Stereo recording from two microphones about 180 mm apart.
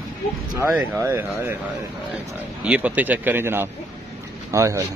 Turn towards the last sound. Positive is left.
turn(degrees=-15)  # may be behind; listen again after turning